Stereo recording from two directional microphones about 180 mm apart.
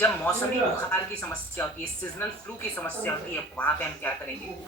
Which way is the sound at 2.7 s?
10° left (ahead or behind).